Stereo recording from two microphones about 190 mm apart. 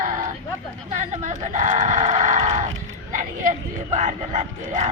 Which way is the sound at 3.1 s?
45° right (ahead or behind).